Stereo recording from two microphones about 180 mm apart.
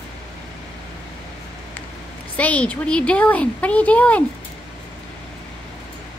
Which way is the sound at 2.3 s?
5° left (ahead or behind).